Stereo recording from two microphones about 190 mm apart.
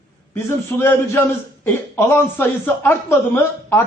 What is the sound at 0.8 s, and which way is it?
A man's voice, 15° left (ahead or behind).